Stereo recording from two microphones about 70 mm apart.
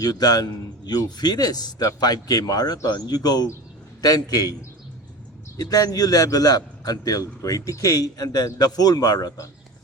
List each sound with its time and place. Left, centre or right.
0.0 s a man's voice: left
5.5 s a man's voice: left